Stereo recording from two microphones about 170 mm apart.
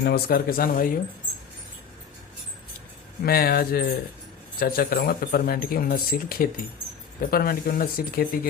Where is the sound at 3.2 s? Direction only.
60° left (ahead or behind).